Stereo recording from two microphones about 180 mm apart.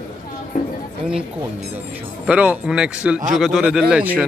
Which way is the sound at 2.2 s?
10° right (ahead or behind).